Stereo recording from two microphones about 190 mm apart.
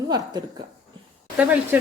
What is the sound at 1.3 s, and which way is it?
Speech, 10° right (ahead or behind).